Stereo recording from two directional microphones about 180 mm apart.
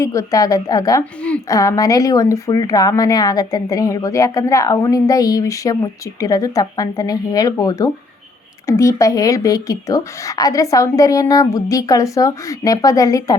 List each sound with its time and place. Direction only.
0.0 s speech: 15° left (ahead or behind)